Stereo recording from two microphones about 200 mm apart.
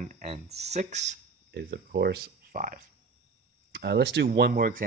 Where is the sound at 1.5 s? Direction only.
55° right (ahead or behind).